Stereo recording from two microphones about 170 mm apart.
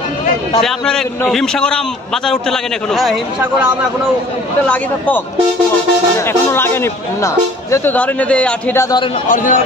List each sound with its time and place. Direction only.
0.6 s a man's voice: centre (ahead or behind)
4.6 s speech: 10° left (ahead or behind)
9.3 s a man's voice: 50° left (ahead or behind)